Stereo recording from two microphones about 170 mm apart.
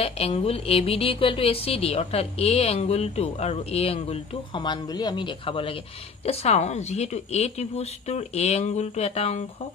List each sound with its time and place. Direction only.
0.0 s a woman's voice: 35° left (ahead or behind)